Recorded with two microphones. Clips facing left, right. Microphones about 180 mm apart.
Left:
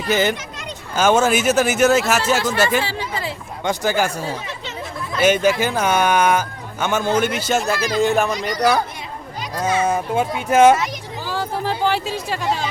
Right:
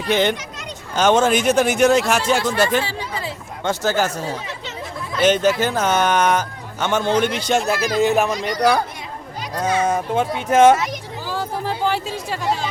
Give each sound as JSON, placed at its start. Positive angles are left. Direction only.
{"t": 0.1, "sound": "speech", "side_deg": 5}
{"t": 2.8, "sound": "speech", "side_deg": 85}
{"t": 3.6, "sound": "speech", "side_deg": 15}
{"t": 11.3, "sound": "chatter", "side_deg": 90}